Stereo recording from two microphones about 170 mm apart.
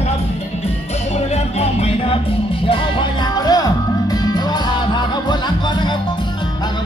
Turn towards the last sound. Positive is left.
turn(degrees=25)  # may be behind; listen again after turning